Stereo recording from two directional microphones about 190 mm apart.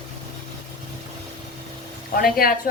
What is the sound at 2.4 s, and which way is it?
Speech, 50° left (ahead or behind).